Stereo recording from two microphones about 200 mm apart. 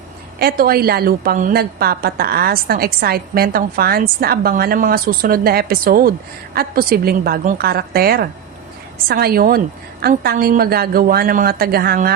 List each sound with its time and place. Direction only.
0.3 s a woman's voice: 50° right (ahead or behind)